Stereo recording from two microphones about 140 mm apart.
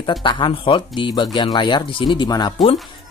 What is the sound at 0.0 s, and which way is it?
Speech, 35° left (ahead or behind).